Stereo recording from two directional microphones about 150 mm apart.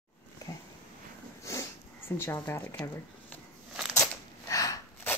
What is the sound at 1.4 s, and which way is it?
Sniff, 20° left (ahead or behind).